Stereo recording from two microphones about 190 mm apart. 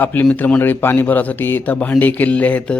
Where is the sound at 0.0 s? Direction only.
10° left (ahead or behind).